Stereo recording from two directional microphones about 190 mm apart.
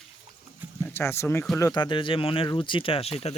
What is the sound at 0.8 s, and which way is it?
Speech, 15° left (ahead or behind).